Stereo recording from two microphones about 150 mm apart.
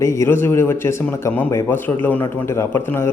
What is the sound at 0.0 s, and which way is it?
A man's voice, 20° left (ahead or behind).